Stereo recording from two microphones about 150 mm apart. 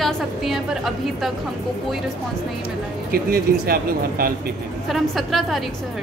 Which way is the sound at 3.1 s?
85° right.